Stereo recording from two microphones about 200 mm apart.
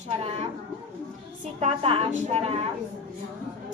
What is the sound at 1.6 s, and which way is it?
A woman's voice, 30° right (ahead or behind).